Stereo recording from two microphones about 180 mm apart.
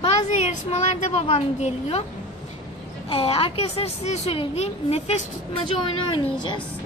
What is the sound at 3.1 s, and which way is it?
A woman's voice, 30° left (ahead or behind).